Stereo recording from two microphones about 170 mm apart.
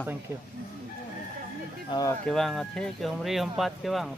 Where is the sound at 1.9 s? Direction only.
30° left (ahead or behind).